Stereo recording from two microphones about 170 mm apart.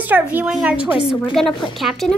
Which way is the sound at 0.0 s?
10° right (ahead or behind).